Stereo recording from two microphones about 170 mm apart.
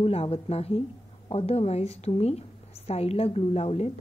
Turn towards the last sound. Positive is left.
turn(degrees=40)  # may be behind; listen again after turning